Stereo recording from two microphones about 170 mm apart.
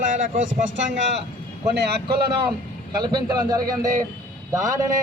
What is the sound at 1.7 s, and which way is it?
Speech, 70° right (ahead or behind).